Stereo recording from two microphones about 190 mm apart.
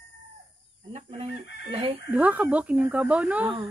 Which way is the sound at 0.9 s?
30° right (ahead or behind).